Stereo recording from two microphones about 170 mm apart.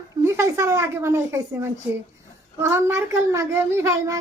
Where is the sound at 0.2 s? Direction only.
15° right (ahead or behind).